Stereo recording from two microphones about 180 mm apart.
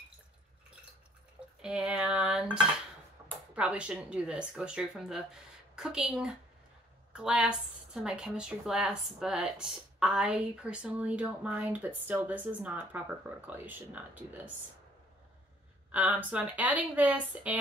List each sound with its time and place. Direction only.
1.6 s speech: 5° right (ahead or behind)
3.2 s a sound: 20° right (ahead or behind)
3.5 s a woman's voice: 5° right (ahead or behind)
15.9 s a woman's voice: 10° right (ahead or behind)